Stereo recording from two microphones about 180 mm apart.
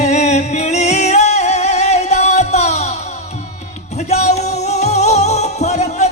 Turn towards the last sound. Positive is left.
turn(degrees=40)  # may be behind; listen again after turning